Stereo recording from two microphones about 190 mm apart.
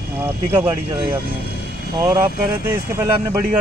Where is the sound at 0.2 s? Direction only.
15° right (ahead or behind).